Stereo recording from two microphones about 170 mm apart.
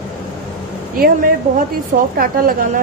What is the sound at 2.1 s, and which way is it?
Speech, 60° right (ahead or behind).